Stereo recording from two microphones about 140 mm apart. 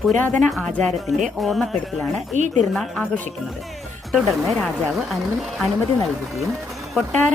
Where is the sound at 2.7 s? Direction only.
Centre (ahead or behind).